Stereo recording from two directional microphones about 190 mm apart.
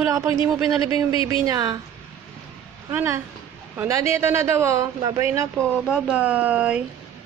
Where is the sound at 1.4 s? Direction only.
20° right (ahead or behind).